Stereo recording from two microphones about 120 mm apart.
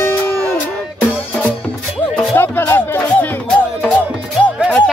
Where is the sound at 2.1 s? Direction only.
10° left (ahead or behind).